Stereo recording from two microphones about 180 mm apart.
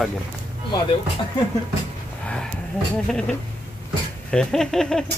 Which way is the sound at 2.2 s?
5° left (ahead or behind).